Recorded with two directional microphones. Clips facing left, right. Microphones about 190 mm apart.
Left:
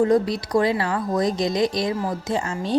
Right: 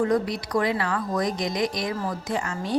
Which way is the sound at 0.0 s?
30° left (ahead or behind).